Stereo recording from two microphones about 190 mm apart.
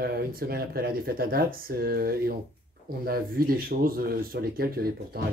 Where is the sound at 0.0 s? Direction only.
50° right (ahead or behind).